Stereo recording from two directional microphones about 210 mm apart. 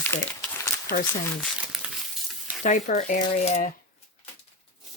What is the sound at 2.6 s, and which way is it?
Speech, 35° left (ahead or behind).